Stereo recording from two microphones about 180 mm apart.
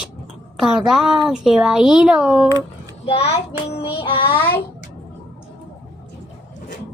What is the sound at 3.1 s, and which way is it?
Speech, 35° left (ahead or behind).